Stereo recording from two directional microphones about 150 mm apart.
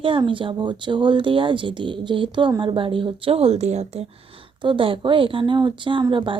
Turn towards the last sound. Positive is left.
turn(degrees=-35)  # may be behind; listen again after turning